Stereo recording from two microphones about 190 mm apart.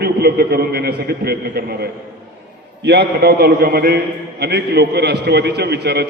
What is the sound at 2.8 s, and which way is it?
A man's voice, 60° right (ahead or behind).